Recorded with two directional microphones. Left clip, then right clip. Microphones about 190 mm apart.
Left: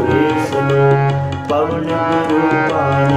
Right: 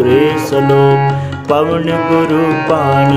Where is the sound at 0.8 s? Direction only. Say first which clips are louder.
Right 3 dB; 15° right (ahead or behind).